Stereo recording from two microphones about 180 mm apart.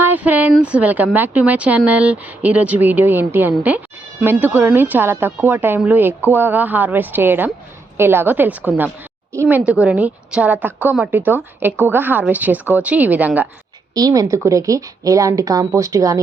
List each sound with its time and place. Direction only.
0.0 s speech: 10° right (ahead or behind)
13.9 s speech: 20° right (ahead or behind)